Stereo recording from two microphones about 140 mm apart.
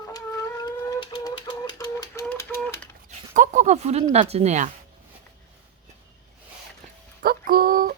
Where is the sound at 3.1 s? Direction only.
65° right (ahead or behind).